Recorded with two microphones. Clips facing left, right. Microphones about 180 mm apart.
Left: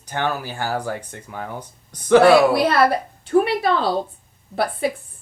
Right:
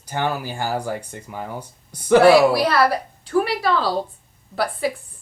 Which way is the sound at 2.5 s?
25° left (ahead or behind).